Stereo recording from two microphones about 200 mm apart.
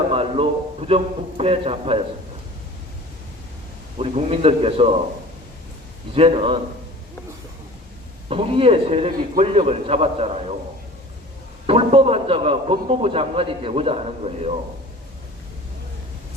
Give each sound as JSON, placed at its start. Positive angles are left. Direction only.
{"t": 0.1, "sound": "a man's voice", "side_deg": -30}
{"t": 3.9, "sound": "a man's voice", "side_deg": -30}
{"t": 6.1, "sound": "a man's voice", "side_deg": -30}
{"t": 8.3, "sound": "a man's voice", "side_deg": -25}
{"t": 11.6, "sound": "a man's voice", "side_deg": -30}